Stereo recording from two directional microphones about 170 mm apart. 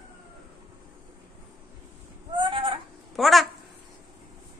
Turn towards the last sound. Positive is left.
turn(degrees=0)  # may be behind; listen again after turning